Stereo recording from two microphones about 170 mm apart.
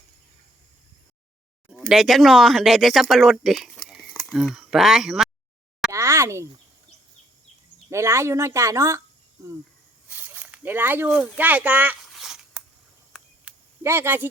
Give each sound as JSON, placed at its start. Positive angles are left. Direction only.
{"t": 1.7, "sound": "speech", "side_deg": 0}
{"t": 5.9, "sound": "speech", "side_deg": -15}
{"t": 7.9, "sound": "speech", "side_deg": -15}
{"t": 12.0, "sound": "a sound", "side_deg": 0}